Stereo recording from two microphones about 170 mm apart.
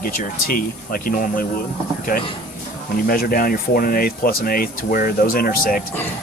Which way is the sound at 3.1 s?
60° left (ahead or behind).